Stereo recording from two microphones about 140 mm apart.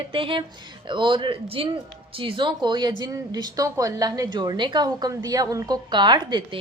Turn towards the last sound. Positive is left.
turn(degrees=-35)  # may be behind; listen again after turning